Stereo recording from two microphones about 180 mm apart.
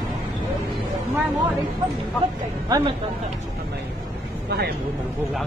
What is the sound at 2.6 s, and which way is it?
Speech, 20° right (ahead or behind).